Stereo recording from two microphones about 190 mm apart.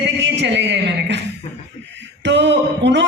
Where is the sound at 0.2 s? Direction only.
65° right (ahead or behind).